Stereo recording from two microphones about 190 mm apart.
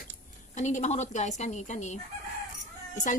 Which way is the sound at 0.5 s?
40° left (ahead or behind).